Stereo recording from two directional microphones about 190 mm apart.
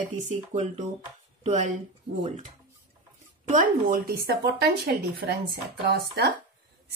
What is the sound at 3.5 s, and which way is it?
Speech, 45° right (ahead or behind).